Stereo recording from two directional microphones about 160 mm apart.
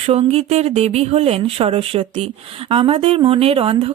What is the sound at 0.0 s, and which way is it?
Speech, 40° right (ahead or behind).